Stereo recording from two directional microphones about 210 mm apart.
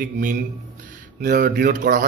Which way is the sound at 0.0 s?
40° right (ahead or behind).